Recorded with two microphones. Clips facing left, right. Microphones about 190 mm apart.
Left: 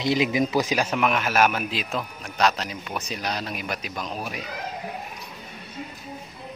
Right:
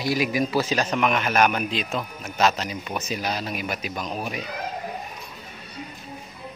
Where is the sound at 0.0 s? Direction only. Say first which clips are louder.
Left 1 dB; 20° left (ahead or behind); by 4.4 s centre (ahead or behind).